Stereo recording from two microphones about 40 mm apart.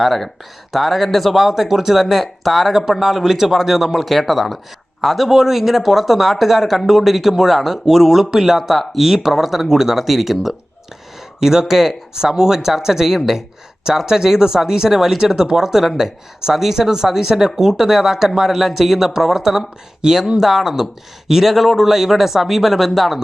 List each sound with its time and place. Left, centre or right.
0.0 s speech: centre
20.0 s speech: centre
20.4 s speech: centre